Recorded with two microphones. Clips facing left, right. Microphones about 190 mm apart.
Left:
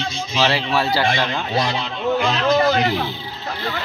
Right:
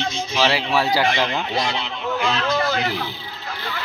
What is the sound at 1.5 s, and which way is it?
Speech, 40° left (ahead or behind).